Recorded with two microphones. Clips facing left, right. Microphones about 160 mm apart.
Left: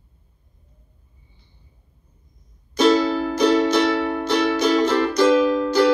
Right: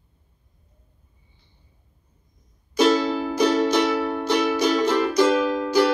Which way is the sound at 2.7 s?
15° right (ahead or behind).